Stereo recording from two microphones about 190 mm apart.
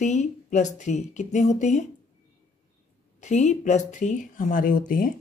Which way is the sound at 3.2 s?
35° left (ahead or behind).